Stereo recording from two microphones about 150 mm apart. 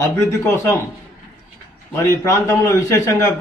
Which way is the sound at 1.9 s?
20° left (ahead or behind).